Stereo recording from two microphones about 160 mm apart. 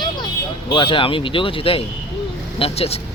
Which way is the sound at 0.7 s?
30° left (ahead or behind).